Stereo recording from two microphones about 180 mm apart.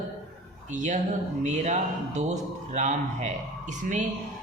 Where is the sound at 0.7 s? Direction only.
40° right (ahead or behind).